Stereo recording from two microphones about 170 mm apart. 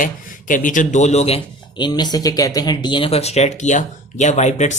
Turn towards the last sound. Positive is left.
turn(degrees=40)  # may be behind; listen again after turning